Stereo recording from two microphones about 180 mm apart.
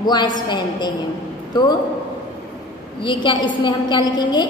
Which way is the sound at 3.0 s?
25° left (ahead or behind).